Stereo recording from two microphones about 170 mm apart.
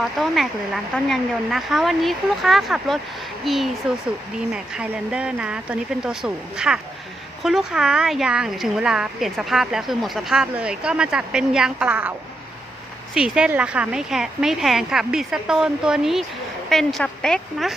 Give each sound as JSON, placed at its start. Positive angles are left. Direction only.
{"t": 0.0, "sound": "speech", "side_deg": 0}
{"t": 13.1, "sound": "speech", "side_deg": -5}